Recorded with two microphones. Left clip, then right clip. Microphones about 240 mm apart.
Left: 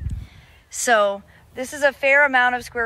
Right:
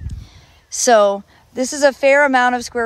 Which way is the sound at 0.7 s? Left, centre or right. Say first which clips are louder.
Right 6 dB; centre.